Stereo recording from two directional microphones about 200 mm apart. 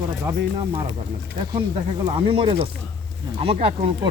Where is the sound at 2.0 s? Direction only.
30° right (ahead or behind).